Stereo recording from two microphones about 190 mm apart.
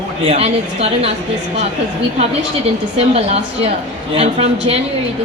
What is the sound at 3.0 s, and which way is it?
A woman's voice, 30° right (ahead or behind).